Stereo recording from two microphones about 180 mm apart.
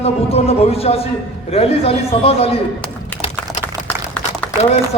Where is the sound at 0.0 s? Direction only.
35° left (ahead or behind).